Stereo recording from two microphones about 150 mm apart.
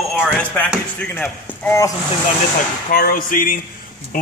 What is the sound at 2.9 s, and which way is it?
Speech, 70° left (ahead or behind).